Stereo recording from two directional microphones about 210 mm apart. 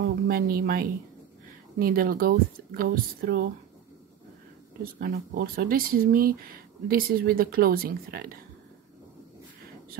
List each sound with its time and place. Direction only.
0.3 s speech: 45° right (ahead or behind)
5.0 s speech: 45° right (ahead or behind)